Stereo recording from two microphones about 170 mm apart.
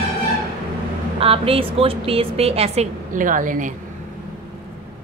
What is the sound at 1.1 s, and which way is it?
A woman's voice, 35° right (ahead or behind).